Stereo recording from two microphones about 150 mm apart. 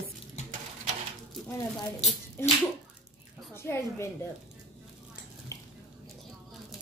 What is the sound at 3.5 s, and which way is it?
Speech, 15° left (ahead or behind).